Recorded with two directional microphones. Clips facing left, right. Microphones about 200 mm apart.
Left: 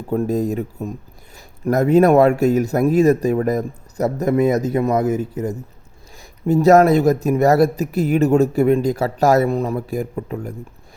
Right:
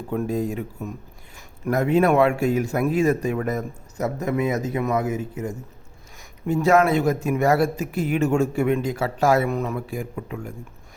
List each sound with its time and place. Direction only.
0.1 s speech: 40° left (ahead or behind)